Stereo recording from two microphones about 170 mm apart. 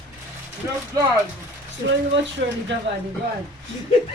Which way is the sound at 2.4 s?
80° right.